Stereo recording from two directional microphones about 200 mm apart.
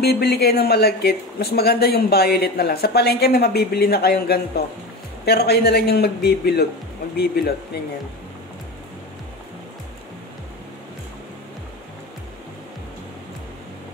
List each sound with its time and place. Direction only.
0.0 s speech: 55° left (ahead or behind)